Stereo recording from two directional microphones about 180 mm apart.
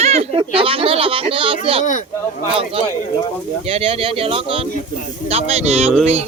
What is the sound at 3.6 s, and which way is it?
Speech, 30° right (ahead or behind).